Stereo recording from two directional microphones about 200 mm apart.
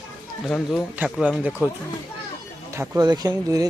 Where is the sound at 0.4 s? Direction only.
Centre (ahead or behind).